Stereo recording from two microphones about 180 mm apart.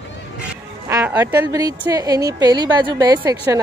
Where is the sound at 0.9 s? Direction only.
15° right (ahead or behind).